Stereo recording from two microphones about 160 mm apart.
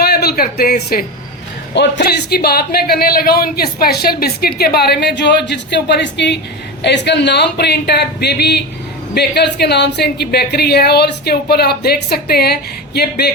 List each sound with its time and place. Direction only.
0.0 s speech: 80° left
1.7 s a woman's voice: 90° left